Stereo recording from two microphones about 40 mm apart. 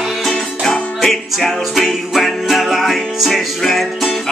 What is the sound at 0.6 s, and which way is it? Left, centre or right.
Music, centre.